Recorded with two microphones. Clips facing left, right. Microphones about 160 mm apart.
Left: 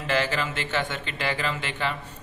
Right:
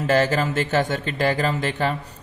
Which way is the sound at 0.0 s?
40° right (ahead or behind).